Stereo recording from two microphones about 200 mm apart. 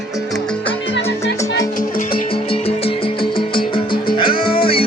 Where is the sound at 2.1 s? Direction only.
25° left (ahead or behind).